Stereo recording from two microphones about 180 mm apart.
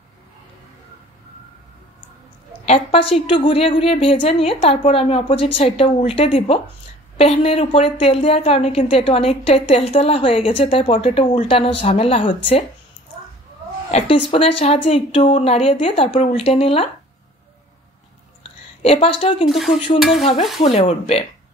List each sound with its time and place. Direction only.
2.6 s a woman's voice: 35° left (ahead or behind)
13.9 s a woman's voice: 30° left (ahead or behind)
18.8 s a woman's voice: 30° left (ahead or behind)
19.5 s speech: centre (ahead or behind)
20.6 s a woman's voice: 35° left (ahead or behind)